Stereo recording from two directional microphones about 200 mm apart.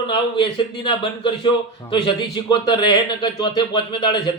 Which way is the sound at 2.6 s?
20° left (ahead or behind).